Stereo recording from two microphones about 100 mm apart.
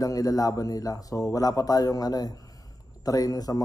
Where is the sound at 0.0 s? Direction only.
35° left (ahead or behind).